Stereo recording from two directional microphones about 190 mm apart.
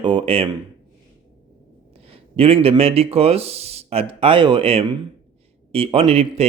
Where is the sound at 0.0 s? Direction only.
25° right (ahead or behind).